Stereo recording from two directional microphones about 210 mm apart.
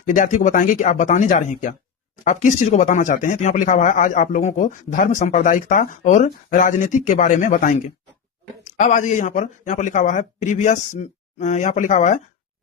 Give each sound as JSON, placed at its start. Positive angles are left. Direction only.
{"t": 0.0, "sound": "speech", "side_deg": 35}